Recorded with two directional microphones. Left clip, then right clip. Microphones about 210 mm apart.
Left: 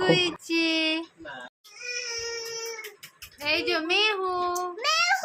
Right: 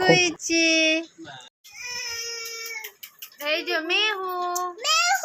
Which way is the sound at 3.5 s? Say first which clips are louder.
Right 1 dB; 10° right (ahead or behind).